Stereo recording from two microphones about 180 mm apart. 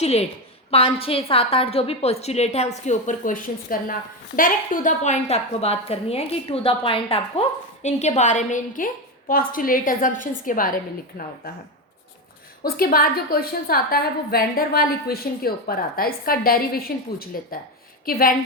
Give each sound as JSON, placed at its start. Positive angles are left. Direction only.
{"t": 0.0, "sound": "a woman's voice", "side_deg": 35}
{"t": 12.6, "sound": "a woman's voice", "side_deg": 55}